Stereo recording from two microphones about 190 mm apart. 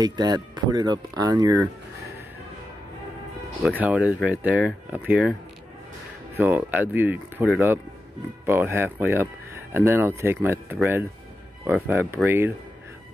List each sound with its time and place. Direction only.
0.0 s speech: 20° right (ahead or behind)
3.6 s speech: 5° right (ahead or behind)
6.3 s speech: 10° right (ahead or behind)